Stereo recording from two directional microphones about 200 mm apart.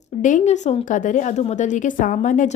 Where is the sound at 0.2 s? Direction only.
40° left (ahead or behind).